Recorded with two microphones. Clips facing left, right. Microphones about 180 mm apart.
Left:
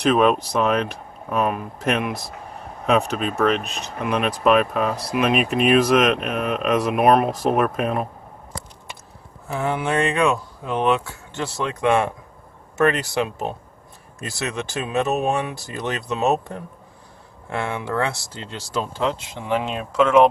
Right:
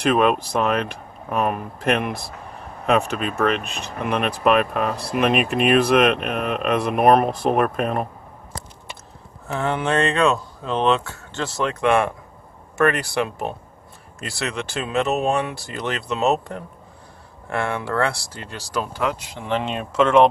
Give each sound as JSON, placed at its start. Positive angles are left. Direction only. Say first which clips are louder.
{"t": 0.0, "sound": "speech", "louder": "left 1 dB", "side_deg": 0}
{"t": 3.6, "sound": "speech", "louder": "even", "side_deg": -60}
{"t": 4.0, "sound": "speech", "louder": "even", "side_deg": 0}
{"t": 9.6, "sound": "speech", "louder": "right 1 dB", "side_deg": 10}
{"t": 19.4, "sound": "speech", "louder": "even", "side_deg": 5}